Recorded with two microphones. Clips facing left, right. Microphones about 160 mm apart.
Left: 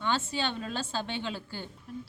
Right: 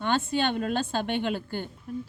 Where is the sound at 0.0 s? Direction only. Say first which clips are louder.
Right 5 dB; 55° right (ahead or behind).